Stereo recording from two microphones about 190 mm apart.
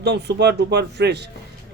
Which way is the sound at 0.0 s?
60° right (ahead or behind).